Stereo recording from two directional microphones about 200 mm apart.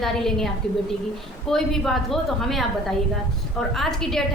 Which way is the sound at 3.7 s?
Centre (ahead or behind).